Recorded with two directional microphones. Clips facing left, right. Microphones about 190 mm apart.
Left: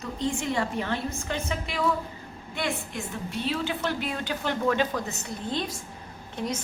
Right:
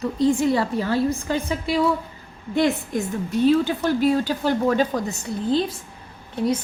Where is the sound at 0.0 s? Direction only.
35° right (ahead or behind).